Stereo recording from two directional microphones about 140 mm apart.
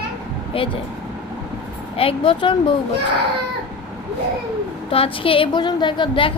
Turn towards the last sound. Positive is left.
turn(degrees=35)  # may be behind; listen again after turning